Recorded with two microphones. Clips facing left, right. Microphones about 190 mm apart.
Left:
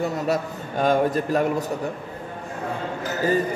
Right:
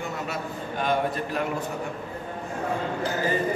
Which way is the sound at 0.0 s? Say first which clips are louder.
Left 8 dB; 40° left (ahead or behind).